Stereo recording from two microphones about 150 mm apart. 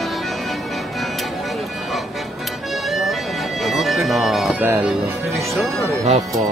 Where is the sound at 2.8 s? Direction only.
Centre (ahead or behind).